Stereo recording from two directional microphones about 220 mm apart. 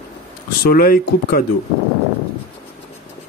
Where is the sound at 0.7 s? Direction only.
40° left (ahead or behind).